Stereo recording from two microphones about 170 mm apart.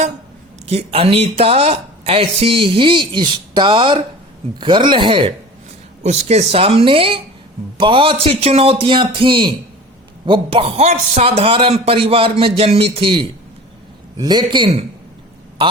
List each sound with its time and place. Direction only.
0.7 s a woman's voice: 35° right (ahead or behind)
6.0 s a woman's voice: 40° right (ahead or behind)